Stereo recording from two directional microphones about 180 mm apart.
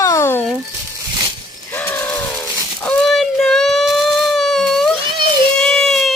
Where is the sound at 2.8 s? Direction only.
Centre (ahead or behind).